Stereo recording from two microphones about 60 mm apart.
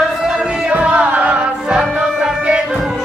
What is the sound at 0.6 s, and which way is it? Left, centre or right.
Music, right.